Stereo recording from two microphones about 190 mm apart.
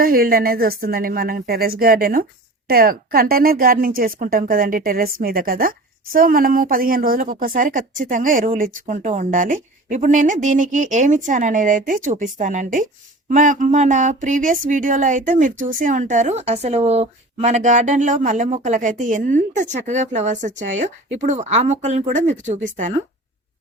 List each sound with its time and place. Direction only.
0.0 s a woman's voice: 50° right (ahead or behind)